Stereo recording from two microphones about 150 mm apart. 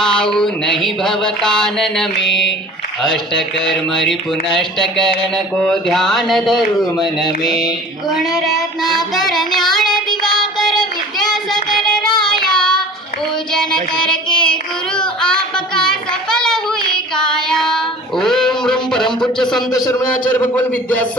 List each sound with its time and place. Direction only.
0.0 s speech: 5° left (ahead or behind)
9.8 s child singing: 30° left (ahead or behind)
10.2 s child singing: centre (ahead or behind)
19.7 s a man's voice: 25° left (ahead or behind)
20.3 s a man's voice: 10° left (ahead or behind)